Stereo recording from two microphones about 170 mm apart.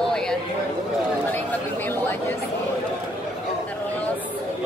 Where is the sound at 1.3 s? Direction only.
10° left (ahead or behind).